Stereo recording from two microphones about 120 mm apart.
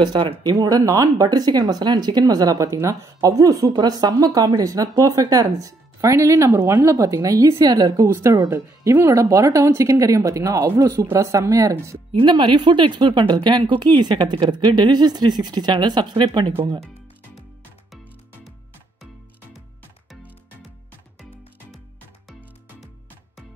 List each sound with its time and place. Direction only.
0.0 s speech: 40° right (ahead or behind)
12.2 s speech: 40° right (ahead or behind)